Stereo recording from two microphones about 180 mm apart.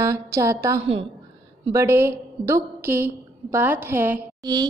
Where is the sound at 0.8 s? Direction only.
30° right (ahead or behind).